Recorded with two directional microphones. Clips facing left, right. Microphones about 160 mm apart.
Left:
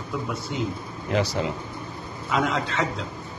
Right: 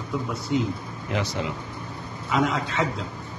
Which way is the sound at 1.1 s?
35° left (ahead or behind).